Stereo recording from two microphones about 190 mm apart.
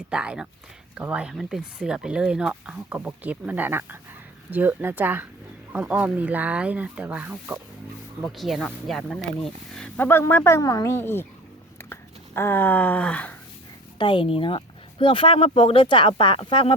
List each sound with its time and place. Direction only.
0.1 s speech: 5° right (ahead or behind); by 11.3 s 10° left (ahead or behind)
11.8 s a sound: 10° left (ahead or behind)
14.0 s speech: 25° left (ahead or behind)